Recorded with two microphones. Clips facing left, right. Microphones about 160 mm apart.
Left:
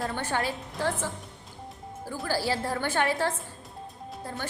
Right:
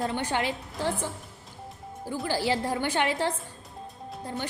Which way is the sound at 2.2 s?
15° right (ahead or behind).